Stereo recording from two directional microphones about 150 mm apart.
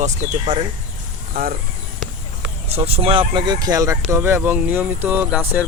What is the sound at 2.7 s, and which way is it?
Speech, 40° right (ahead or behind).